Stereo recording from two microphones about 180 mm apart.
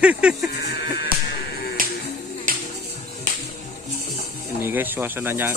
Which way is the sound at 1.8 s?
50° right (ahead or behind).